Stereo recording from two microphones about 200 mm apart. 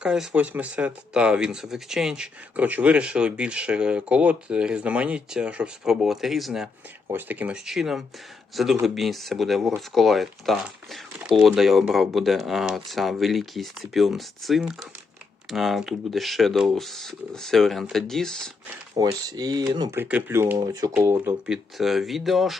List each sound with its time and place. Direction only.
0.0 s speech: 5° right (ahead or behind)
19.0 s speech: 20° right (ahead or behind); by 22.5 s centre (ahead or behind)